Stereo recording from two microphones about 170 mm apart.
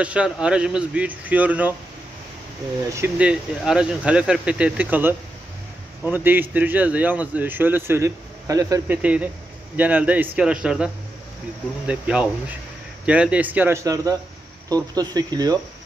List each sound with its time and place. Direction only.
0.0 s speech: 5° right (ahead or behind)
2.9 s speech: 10° right (ahead or behind)
8.9 s speech: 10° right (ahead or behind)
11.9 s speech: 5° right (ahead or behind)